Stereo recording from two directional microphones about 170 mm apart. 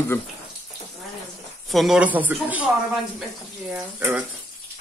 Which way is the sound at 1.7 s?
5° right (ahead or behind).